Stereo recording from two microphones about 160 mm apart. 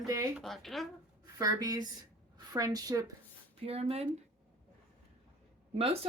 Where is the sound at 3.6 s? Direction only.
35° right (ahead or behind).